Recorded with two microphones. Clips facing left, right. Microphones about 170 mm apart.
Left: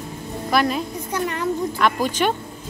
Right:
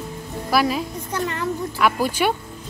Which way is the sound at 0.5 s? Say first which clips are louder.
Even; 5° right (ahead or behind).